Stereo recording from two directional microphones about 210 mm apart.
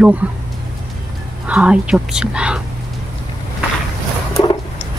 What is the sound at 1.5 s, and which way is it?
Speech, 5° right (ahead or behind).